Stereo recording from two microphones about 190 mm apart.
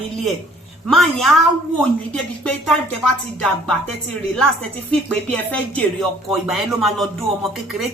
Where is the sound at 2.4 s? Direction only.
5° left (ahead or behind).